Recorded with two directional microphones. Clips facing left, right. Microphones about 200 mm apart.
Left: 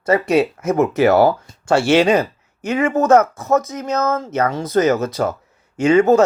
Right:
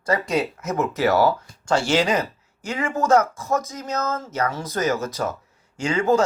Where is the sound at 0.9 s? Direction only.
65° left (ahead or behind).